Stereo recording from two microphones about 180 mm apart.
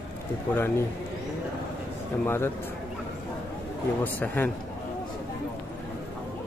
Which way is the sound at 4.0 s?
10° left (ahead or behind).